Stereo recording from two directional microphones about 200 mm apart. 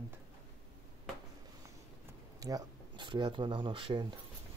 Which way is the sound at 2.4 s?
20° right (ahead or behind).